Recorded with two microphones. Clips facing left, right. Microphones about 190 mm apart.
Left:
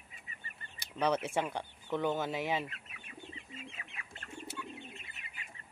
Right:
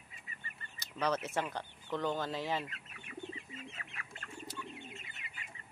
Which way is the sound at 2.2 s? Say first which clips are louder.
Left 2 dB; 20° left (ahead or behind).